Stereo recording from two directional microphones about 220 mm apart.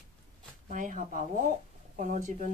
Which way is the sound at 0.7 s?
35° right (ahead or behind).